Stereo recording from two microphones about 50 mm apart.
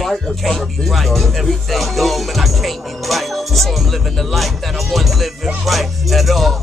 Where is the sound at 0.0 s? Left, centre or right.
Centre.